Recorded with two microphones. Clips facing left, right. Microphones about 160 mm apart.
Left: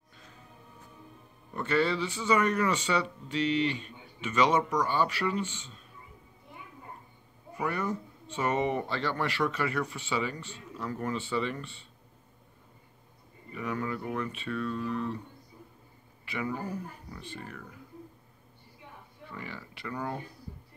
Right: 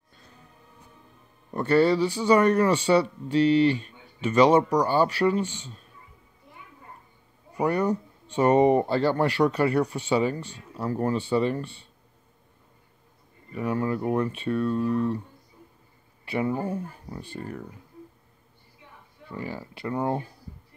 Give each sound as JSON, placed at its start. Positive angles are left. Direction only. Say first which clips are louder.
{"t": 1.5, "sound": "speech", "louder": "right 7 dB", "side_deg": -35}
{"t": 7.5, "sound": "speech", "louder": "right 8 dB", "side_deg": -35}
{"t": 13.6, "sound": "speech", "louder": "right 7 dB", "side_deg": -30}
{"t": 16.3, "sound": "speech", "louder": "right 7 dB", "side_deg": -30}
{"t": 19.3, "sound": "speech", "louder": "right 8 dB", "side_deg": -35}